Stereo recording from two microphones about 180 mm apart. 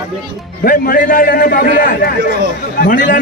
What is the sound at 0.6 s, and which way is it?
A man's voice, 55° left (ahead or behind).